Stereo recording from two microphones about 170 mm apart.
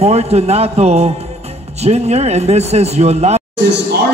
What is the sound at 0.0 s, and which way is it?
Speech, 40° right (ahead or behind).